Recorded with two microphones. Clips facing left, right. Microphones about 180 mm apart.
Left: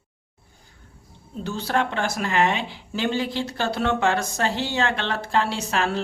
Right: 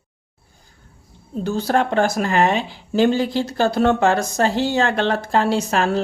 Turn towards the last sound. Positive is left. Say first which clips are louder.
# right 6 dB
turn(degrees=-45)  # may be behind; listen again after turning